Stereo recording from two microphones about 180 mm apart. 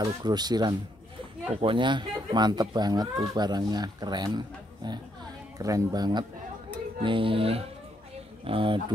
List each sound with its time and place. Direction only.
0.0 s speech: 25° right (ahead or behind)